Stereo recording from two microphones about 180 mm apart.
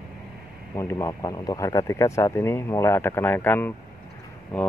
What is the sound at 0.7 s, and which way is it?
Speech, 15° left (ahead or behind).